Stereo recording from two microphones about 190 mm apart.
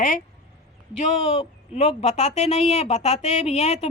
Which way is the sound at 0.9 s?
35° left (ahead or behind).